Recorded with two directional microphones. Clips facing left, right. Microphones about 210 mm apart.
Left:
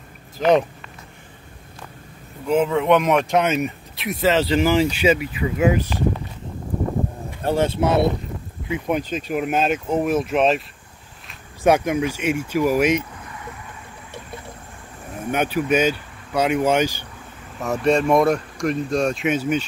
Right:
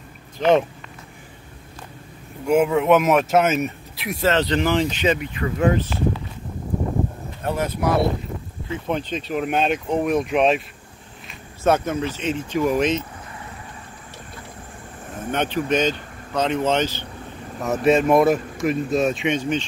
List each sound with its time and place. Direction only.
0.4 s speech: centre (ahead or behind)
2.4 s speech: 10° right (ahead or behind); by 5.9 s 10° left (ahead or behind)
7.4 s speech: 30° left (ahead or behind)
8.6 s speech: 15° left (ahead or behind)
11.6 s speech: 10° left (ahead or behind)
15.3 s speech: 10° left (ahead or behind)
17.6 s speech: centre (ahead or behind)